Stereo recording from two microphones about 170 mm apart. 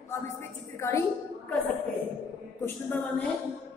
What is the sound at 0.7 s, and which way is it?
Music, 15° left (ahead or behind).